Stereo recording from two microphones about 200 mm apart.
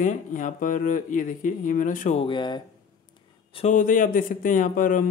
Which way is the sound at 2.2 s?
25° left (ahead or behind).